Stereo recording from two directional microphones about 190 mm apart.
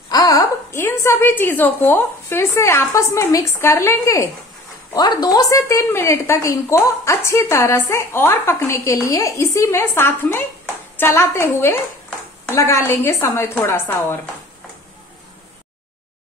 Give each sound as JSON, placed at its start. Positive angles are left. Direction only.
{"t": 0.1, "sound": "a woman's voice", "side_deg": 20}